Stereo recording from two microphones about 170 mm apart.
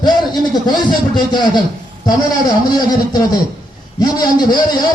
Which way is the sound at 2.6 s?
25° left (ahead or behind).